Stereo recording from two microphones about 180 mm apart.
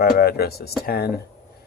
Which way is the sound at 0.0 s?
60° left (ahead or behind).